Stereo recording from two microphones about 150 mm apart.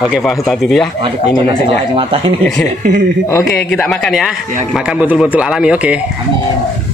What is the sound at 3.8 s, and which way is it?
A man's voice, 5° left (ahead or behind).